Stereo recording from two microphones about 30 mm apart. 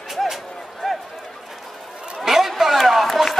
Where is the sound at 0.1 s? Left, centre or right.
Centre.